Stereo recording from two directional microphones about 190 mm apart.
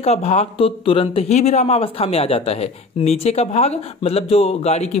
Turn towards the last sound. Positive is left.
turn(degrees=35)  # may be behind; listen again after turning